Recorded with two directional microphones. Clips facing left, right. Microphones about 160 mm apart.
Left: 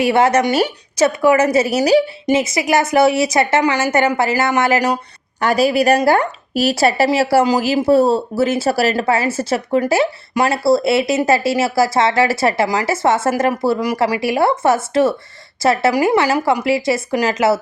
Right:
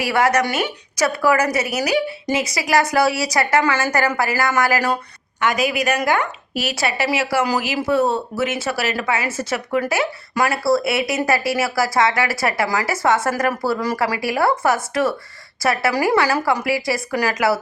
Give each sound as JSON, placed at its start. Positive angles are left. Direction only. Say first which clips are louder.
{"t": 0.0, "sound": "a woman's voice", "louder": "left 4 dB", "side_deg": 25}
{"t": 5.4, "sound": "a woman's voice", "louder": "left 5 dB", "side_deg": 35}